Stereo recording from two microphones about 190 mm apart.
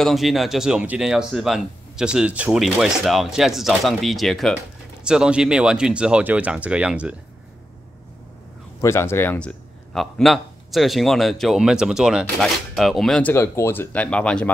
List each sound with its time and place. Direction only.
0.0 s a man's voice: centre (ahead or behind)
8.8 s a man's voice: 15° left (ahead or behind)